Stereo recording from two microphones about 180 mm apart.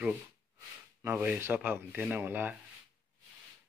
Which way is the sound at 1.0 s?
10° right (ahead or behind).